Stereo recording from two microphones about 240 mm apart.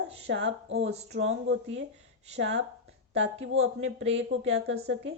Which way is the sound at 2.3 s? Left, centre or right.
Right.